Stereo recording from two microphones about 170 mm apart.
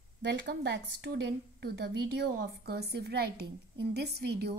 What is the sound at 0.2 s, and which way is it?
A woman's voice, 85° right.